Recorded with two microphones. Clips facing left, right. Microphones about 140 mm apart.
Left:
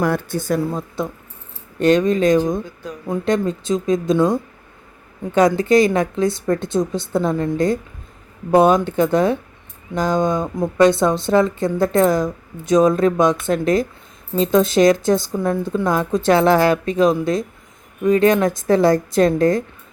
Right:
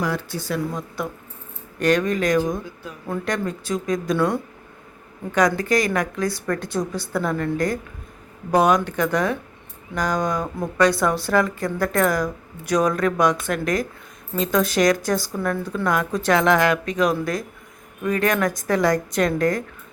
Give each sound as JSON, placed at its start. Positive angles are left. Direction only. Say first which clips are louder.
{"t": 0.0, "sound": "speech", "louder": "left 6 dB", "side_deg": 50}
{"t": 0.6, "sound": "speech", "louder": "left 4 dB", "side_deg": 30}